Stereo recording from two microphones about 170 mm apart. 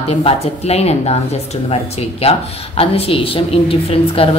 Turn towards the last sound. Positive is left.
turn(degrees=35)  # may be behind; listen again after turning